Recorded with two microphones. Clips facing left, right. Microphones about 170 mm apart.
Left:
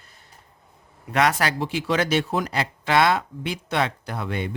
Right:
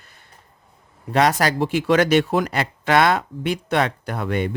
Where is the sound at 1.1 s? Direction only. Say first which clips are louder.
Right 3 dB; 35° right (ahead or behind); by 4.6 s 60° right (ahead or behind).